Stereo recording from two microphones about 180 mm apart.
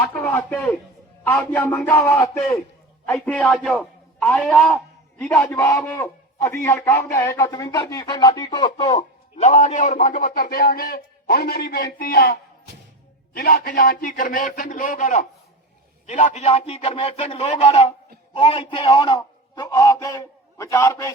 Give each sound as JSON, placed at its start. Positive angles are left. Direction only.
{"t": 0.0, "sound": "a man's voice", "side_deg": 10}
{"t": 16.2, "sound": "a man's voice", "side_deg": 35}